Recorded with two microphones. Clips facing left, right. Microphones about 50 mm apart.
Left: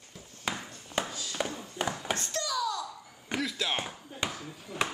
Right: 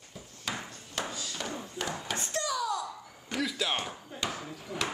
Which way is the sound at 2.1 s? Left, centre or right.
Right.